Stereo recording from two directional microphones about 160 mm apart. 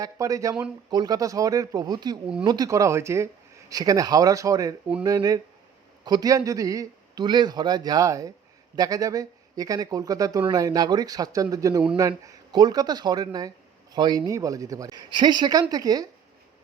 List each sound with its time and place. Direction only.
0.0 s a man's voice: 20° right (ahead or behind)